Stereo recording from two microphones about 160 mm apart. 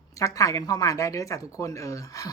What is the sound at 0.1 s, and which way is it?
A woman's voice, 20° left (ahead or behind).